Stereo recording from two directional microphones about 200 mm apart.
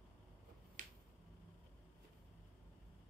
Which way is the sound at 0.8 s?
40° right (ahead or behind).